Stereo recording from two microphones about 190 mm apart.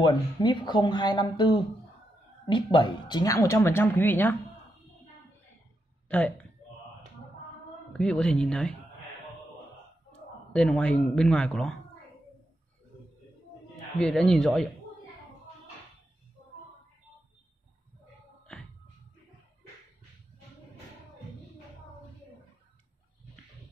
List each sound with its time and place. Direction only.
0.0 s speech: 25° left (ahead or behind)
6.0 s speech: 5° left (ahead or behind)
8.0 s speech: 5° left (ahead or behind)
10.5 s speech: 5° left (ahead or behind)
13.9 s speech: 5° left (ahead or behind)
18.5 s music: 5° left (ahead or behind)